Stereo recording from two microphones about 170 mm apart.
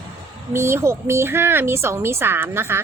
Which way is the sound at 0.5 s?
15° right (ahead or behind).